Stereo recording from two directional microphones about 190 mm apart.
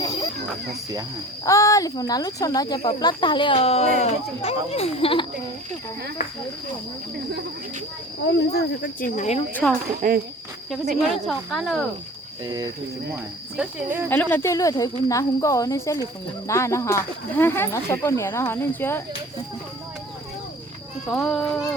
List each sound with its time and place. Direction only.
0.3 s speech: 60° right (ahead or behind)
1.5 s speech: 15° left (ahead or behind)
8.3 s speech: 65° left (ahead or behind); by 9.4 s 40° left (ahead or behind)
9.5 s speech: 10° left (ahead or behind)
10.0 s speech: 45° right (ahead or behind)
11.1 s speech: centre (ahead or behind)
12.5 s speech: 20° right (ahead or behind)
13.6 s speech: 5° right (ahead or behind)
14.1 s speech: 10° left (ahead or behind)
21.1 s speech: 5° left (ahead or behind)